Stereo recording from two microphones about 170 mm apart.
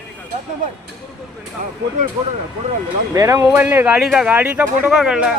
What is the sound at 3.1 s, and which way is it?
Speech, 20° right (ahead or behind).